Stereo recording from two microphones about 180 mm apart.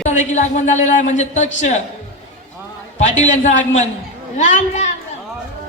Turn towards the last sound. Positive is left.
turn(degrees=40)  # may be behind; listen again after turning